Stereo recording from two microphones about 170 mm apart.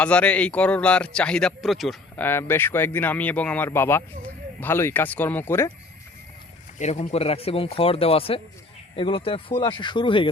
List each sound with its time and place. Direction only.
0.0 s speech: 5° left (ahead or behind)
2.1 s speech: 15° left (ahead or behind)
6.7 s speech: 45° left (ahead or behind); by 10.2 s 30° left (ahead or behind)